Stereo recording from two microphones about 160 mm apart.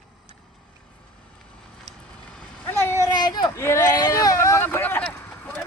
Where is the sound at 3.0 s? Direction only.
25° left (ahead or behind); by 5.6 s 10° left (ahead or behind).